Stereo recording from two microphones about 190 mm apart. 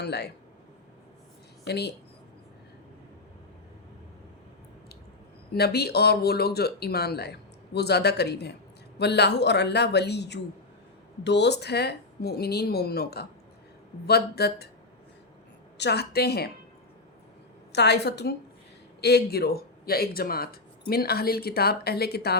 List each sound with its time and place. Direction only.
0.0 s speech: 60° left (ahead or behind)
1.6 s a woman's voice: 60° left (ahead or behind)
5.5 s speech: 55° left (ahead or behind)
15.8 s speech: 60° left (ahead or behind)
17.7 s speech: 60° left (ahead or behind)